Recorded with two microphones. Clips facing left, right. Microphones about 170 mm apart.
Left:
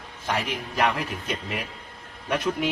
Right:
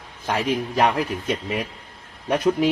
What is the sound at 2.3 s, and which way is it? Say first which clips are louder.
Speech: right 6 dB; 40° right (ahead or behind).